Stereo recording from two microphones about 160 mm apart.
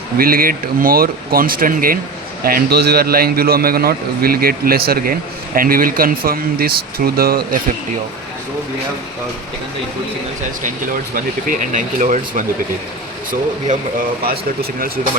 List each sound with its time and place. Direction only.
0.2 s a man's voice: 65° right (ahead or behind)
11.1 s speech: 55° right (ahead or behind)
14.3 s a man's voice: 70° right (ahead or behind)